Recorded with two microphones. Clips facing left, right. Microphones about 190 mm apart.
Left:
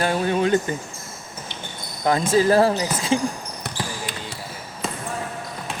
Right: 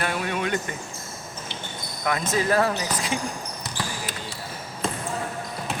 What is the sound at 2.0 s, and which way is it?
Speech, 30° left (ahead or behind).